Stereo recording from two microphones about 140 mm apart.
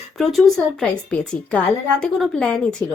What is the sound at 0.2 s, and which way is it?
A woman's voice, centre (ahead or behind).